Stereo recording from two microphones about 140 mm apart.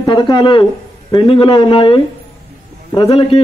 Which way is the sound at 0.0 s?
35° left (ahead or behind).